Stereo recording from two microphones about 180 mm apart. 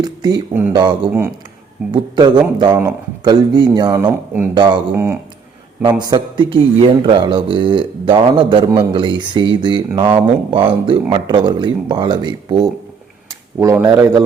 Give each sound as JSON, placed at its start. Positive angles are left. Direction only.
{"t": 0.0, "sound": "speech", "side_deg": -20}
{"t": 5.8, "sound": "speech", "side_deg": -25}
{"t": 13.6, "sound": "speech", "side_deg": -15}